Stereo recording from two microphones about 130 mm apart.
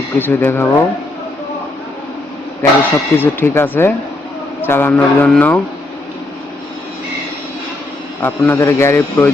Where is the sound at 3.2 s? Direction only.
15° left (ahead or behind).